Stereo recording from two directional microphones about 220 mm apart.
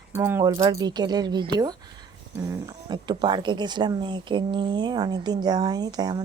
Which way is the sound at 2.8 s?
20° right (ahead or behind).